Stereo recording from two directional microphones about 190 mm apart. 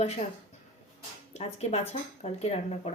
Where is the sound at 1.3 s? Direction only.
35° left (ahead or behind).